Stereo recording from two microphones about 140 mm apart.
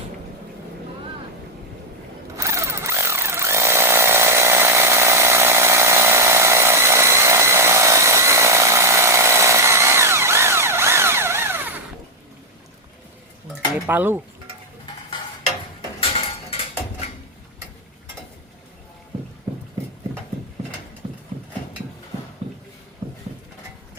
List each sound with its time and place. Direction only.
2.4 s tools: 20° right (ahead or behind)
13.8 s speech: 15° right (ahead or behind)
16.0 s a sound: 40° left (ahead or behind)
21.0 s horse: 40° right (ahead or behind)